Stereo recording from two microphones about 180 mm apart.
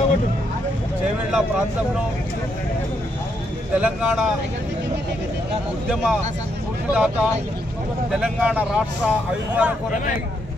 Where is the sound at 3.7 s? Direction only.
5° right (ahead or behind).